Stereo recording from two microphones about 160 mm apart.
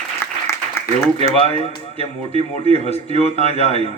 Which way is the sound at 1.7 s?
40° left (ahead or behind).